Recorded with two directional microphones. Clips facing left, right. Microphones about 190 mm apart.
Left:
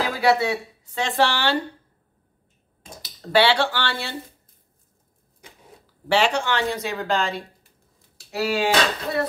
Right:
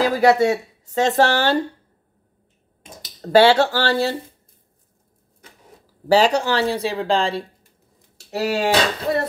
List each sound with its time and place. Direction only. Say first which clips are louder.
0.2 s speech: right 3 dB; 45° right (ahead or behind)
3.2 s speech: right 6 dB; 40° right (ahead or behind)
6.0 s speech: right 5 dB; 40° right (ahead or behind)
8.3 s speech: right 2 dB; 40° right (ahead or behind)